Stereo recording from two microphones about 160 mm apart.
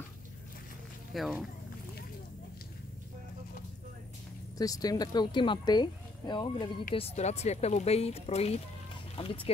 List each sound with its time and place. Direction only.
1.1 s speech: centre (ahead or behind)
4.6 s speech: 20° left (ahead or behind)
7.0 s speech: 45° left (ahead or behind)